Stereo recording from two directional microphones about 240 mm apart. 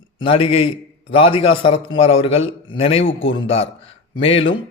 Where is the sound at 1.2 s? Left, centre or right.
Left.